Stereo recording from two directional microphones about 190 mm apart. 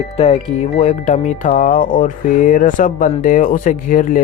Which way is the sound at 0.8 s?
35° left (ahead or behind).